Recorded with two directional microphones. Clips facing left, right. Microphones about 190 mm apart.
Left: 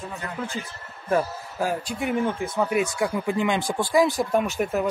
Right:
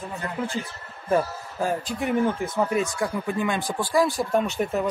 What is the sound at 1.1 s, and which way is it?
A man's voice, centre (ahead or behind).